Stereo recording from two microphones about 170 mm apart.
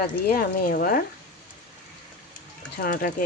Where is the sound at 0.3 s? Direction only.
60° left (ahead or behind).